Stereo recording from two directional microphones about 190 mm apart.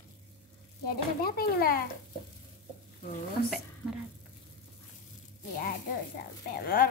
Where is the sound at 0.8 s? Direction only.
50° left (ahead or behind).